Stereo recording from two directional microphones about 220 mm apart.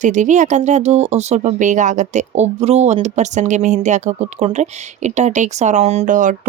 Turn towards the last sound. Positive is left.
turn(degrees=-35)  # may be behind; listen again after turning